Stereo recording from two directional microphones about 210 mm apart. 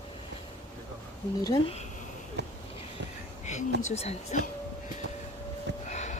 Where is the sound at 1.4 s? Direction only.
20° left (ahead or behind).